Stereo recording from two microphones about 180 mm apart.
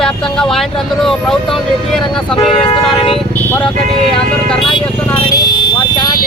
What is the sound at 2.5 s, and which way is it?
Speech, 30° left (ahead or behind).